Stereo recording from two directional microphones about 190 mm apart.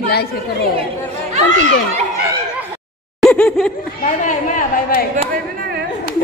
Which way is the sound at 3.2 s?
5° left (ahead or behind).